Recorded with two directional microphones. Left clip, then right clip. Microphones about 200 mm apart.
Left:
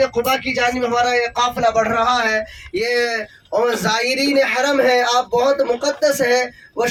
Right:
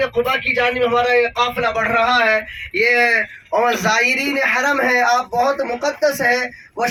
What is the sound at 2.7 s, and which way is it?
Speech, 70° left (ahead or behind).